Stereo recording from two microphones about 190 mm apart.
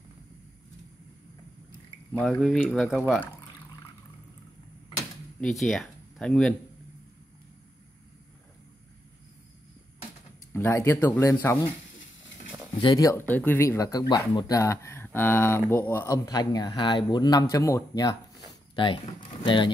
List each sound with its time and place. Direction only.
2.1 s speech: centre (ahead or behind)
5.4 s speech: centre (ahead or behind)
10.5 s speech: 15° left (ahead or behind)
12.7 s speech: 25° left (ahead or behind)